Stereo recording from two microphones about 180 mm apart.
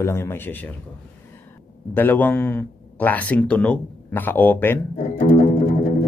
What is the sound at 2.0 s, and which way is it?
Speech, 10° left (ahead or behind).